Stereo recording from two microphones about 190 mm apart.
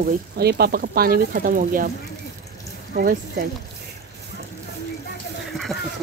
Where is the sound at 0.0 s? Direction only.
55° right (ahead or behind).